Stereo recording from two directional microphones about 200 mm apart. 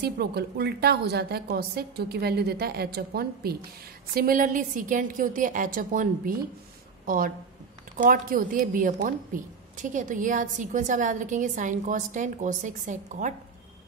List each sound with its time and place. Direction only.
0.0 s a woman's voice: 55° right (ahead or behind)